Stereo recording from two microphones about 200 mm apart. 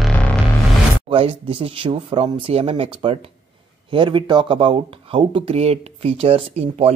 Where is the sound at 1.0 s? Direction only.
30° right (ahead or behind).